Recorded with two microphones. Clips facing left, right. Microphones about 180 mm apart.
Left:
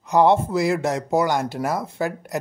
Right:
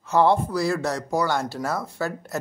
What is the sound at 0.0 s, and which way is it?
Speech, 15° left (ahead or behind).